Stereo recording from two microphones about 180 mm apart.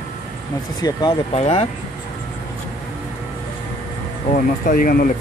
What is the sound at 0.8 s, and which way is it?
Speech, 20° left (ahead or behind).